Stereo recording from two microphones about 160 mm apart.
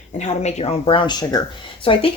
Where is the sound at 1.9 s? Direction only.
35° left (ahead or behind).